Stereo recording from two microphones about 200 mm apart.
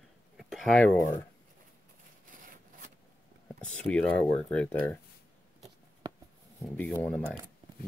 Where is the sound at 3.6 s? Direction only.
5° left (ahead or behind).